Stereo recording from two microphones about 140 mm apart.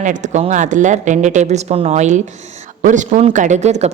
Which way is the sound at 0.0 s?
60° right (ahead or behind).